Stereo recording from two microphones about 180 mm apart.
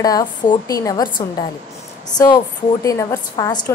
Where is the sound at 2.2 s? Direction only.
25° left (ahead or behind).